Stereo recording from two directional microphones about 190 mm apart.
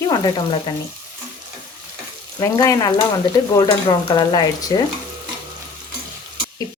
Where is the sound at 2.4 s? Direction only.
15° left (ahead or behind).